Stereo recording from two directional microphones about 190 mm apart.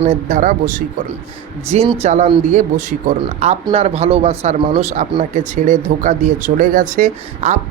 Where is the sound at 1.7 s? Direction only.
35° right (ahead or behind).